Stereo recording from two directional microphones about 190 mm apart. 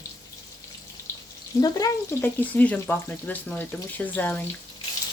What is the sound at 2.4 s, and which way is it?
Speech, 10° left (ahead or behind).